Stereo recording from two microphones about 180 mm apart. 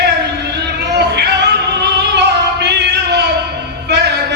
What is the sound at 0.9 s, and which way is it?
Music, 65° right (ahead or behind).